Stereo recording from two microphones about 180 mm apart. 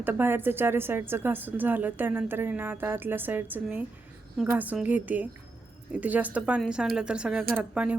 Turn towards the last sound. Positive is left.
turn(degrees=-5)  # may be behind; listen again after turning